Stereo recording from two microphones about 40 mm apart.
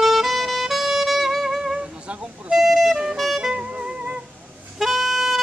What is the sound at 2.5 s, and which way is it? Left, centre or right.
Music, centre.